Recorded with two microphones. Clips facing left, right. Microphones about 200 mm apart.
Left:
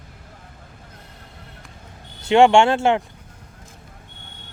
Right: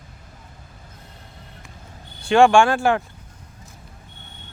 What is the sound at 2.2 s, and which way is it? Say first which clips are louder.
Speech: left 1 dB; 20° left (ahead or behind).